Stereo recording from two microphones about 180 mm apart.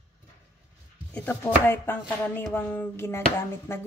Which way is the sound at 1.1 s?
10° left (ahead or behind).